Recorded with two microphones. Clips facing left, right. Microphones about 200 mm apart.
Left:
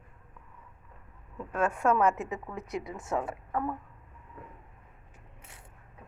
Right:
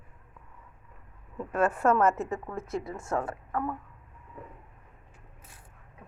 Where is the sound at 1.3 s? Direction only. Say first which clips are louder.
Right 3 dB; 5° right (ahead or behind).